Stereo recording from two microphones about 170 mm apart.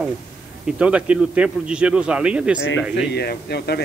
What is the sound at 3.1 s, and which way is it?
Speech, 75° left (ahead or behind).